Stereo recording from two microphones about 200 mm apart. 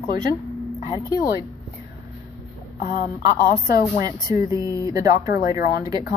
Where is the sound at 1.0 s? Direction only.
15° left (ahead or behind).